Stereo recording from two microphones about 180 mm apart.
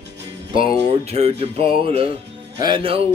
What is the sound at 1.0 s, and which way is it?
Music, 35° right (ahead or behind).